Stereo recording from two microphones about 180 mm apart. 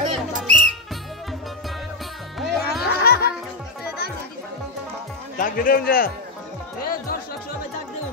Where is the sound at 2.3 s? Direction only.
Centre (ahead or behind).